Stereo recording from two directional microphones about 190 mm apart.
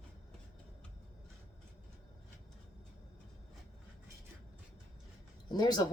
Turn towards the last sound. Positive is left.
turn(degrees=20)  # may be behind; listen again after turning